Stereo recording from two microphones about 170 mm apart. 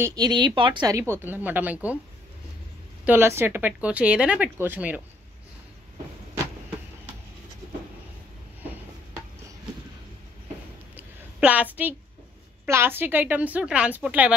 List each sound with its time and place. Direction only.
0.0 s speech: 25° right (ahead or behind)
3.1 s speech: 15° right (ahead or behind)
11.0 s a sound: 10° right (ahead or behind)
12.6 s speech: 15° right (ahead or behind)